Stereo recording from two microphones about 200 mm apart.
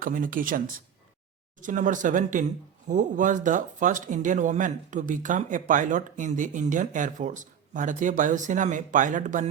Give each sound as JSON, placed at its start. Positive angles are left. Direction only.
{"t": 0.0, "sound": "speech", "side_deg": -45}
{"t": 1.6, "sound": "speech", "side_deg": -40}